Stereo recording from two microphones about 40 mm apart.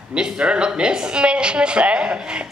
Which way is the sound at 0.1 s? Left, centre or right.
Right.